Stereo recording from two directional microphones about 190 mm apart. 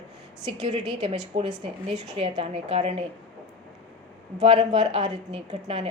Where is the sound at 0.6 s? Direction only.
35° right (ahead or behind).